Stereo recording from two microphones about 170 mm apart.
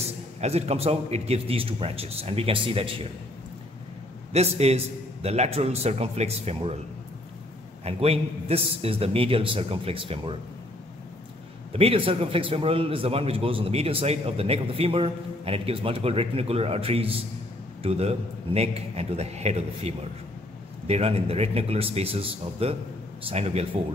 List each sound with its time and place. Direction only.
0.4 s a man's voice: 35° right (ahead or behind)
4.3 s a man's voice: 40° right (ahead or behind)
7.8 s a man's voice: 35° right (ahead or behind)
11.7 s a man's voice: 35° right (ahead or behind)